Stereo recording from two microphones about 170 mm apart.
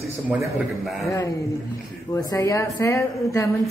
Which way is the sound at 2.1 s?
20° left (ahead or behind).